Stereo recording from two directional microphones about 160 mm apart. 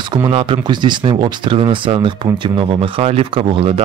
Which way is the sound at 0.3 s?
30° right (ahead or behind).